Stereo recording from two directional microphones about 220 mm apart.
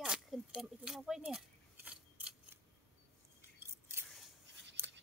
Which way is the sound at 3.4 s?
10° right (ahead or behind).